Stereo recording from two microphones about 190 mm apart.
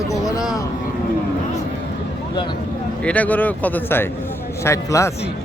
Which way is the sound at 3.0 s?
5° left (ahead or behind).